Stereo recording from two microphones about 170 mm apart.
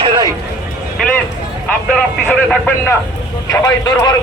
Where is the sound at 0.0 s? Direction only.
30° right (ahead or behind).